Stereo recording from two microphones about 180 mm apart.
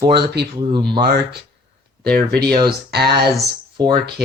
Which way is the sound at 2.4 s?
25° right (ahead or behind).